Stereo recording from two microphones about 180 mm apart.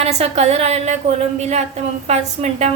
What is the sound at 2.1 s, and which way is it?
Speech, 40° right (ahead or behind).